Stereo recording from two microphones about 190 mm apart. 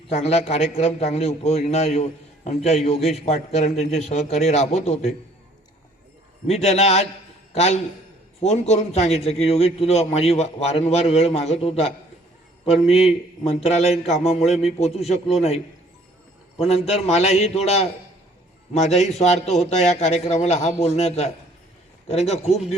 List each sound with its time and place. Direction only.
0.1 s a man's voice: 35° left (ahead or behind)
6.5 s a man's voice: 35° left (ahead or behind)
12.9 s a man's voice: 35° left (ahead or behind)
16.6 s a man's voice: 35° left (ahead or behind)